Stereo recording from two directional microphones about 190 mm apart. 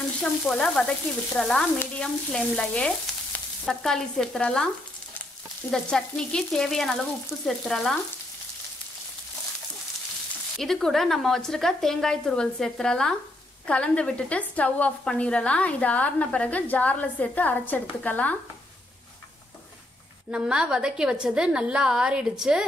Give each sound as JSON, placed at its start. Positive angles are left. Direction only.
{"t": 0.2, "sound": "frying", "side_deg": 5}
{"t": 5.7, "sound": "frying", "side_deg": 5}
{"t": 10.6, "sound": "frying", "side_deg": 0}
{"t": 13.7, "sound": "a woman's voice", "side_deg": 5}
{"t": 20.2, "sound": "frying", "side_deg": -5}